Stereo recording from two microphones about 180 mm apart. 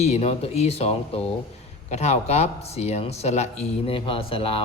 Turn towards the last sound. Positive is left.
turn(degrees=30)  # may be behind; listen again after turning